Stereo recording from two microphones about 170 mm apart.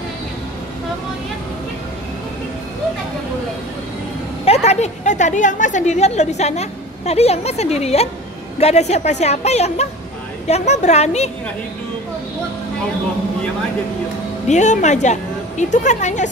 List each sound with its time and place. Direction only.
4.5 s a woman's voice: 40° left (ahead or behind)
14.5 s a woman's voice: 45° left (ahead or behind)